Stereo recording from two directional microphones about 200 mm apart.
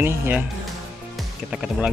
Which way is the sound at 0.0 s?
10° right (ahead or behind).